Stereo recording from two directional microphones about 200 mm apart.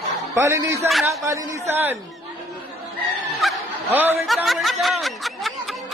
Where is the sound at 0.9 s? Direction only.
Centre (ahead or behind).